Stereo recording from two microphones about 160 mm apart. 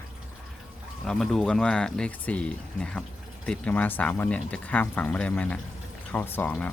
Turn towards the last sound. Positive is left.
turn(degrees=10)  # may be behind; listen again after turning